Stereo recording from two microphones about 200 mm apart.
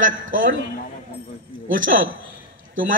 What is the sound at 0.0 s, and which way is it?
Speech, 40° right (ahead or behind).